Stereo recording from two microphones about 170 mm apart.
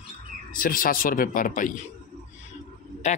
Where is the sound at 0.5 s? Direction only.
55° left (ahead or behind).